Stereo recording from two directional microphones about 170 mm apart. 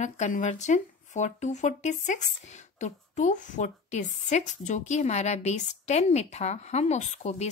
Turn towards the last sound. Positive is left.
turn(degrees=40)  # may be behind; listen again after turning